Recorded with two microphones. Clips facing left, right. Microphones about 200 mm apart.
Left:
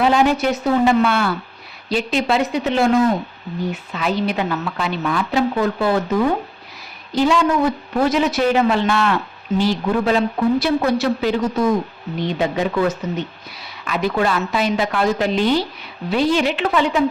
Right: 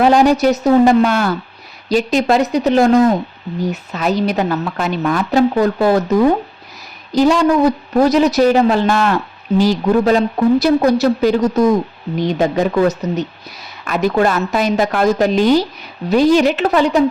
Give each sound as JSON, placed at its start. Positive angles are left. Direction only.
{"t": 0.0, "sound": "a woman's voice", "side_deg": -40}